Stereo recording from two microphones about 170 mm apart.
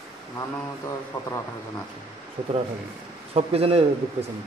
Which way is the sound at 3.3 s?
35° right (ahead or behind).